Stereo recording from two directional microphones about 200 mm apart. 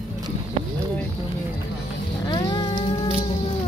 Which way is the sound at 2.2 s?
25° left (ahead or behind).